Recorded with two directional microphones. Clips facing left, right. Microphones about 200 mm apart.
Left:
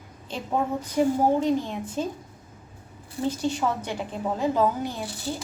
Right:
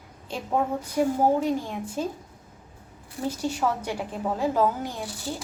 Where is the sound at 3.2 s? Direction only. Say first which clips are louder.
Left 1 dB; 10° right (ahead or behind).